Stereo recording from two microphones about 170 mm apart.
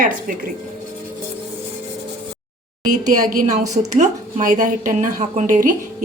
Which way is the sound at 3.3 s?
50° right (ahead or behind).